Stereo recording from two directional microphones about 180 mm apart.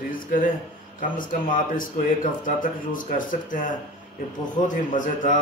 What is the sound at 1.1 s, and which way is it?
Speech, 50° left (ahead or behind).